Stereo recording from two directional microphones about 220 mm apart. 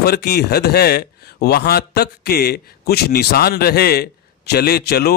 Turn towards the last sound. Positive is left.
turn(degrees=45)  # may be behind; listen again after turning